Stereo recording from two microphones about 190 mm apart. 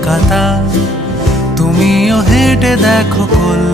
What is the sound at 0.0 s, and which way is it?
Music, centre (ahead or behind).